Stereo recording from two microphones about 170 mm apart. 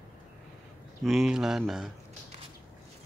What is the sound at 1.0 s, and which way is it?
Speech, centre (ahead or behind).